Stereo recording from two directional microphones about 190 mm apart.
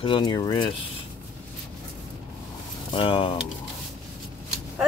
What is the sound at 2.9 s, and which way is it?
Speech, 25° left (ahead or behind).